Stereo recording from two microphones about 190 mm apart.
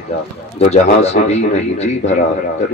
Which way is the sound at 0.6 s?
35° left (ahead or behind).